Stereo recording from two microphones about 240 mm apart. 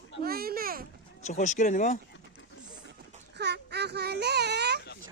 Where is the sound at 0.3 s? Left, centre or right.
Right.